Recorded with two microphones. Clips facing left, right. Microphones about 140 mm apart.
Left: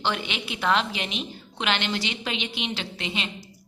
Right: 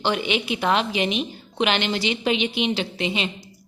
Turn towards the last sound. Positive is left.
turn(degrees=-15)  # may be behind; listen again after turning